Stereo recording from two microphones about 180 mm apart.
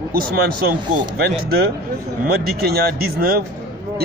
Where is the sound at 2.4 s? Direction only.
60° right (ahead or behind).